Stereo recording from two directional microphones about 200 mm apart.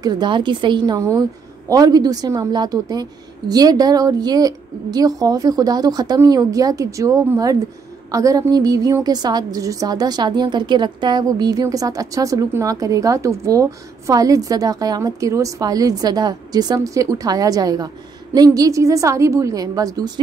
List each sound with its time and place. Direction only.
0.0 s a woman's voice: 20° right (ahead or behind)